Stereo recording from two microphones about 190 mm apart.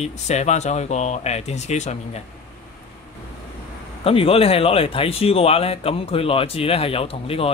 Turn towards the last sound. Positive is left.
turn(degrees=30)  # may be behind; listen again after turning